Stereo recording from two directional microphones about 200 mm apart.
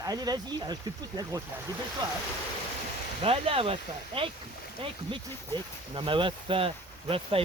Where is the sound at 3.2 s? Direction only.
30° right (ahead or behind).